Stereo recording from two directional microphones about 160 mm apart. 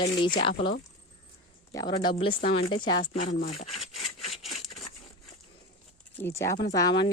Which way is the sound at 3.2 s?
45° left (ahead or behind).